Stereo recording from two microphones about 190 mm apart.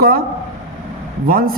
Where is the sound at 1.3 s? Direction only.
50° right (ahead or behind).